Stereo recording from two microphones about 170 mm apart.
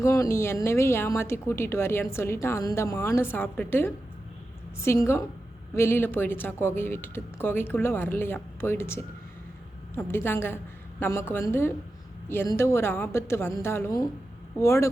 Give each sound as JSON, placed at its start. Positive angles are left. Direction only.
{"t": 0.0, "sound": "a woman's voice", "side_deg": 20}